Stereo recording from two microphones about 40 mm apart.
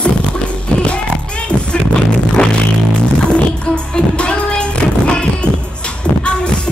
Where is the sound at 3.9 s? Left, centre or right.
Left.